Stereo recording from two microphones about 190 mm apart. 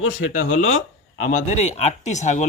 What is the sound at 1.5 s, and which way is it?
Speech, 35° left (ahead or behind).